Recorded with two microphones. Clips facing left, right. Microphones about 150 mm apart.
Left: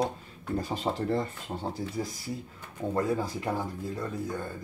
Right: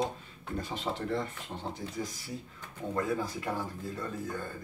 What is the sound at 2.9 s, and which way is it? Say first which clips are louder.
Speech: left 3 dB; 30° left (ahead or behind).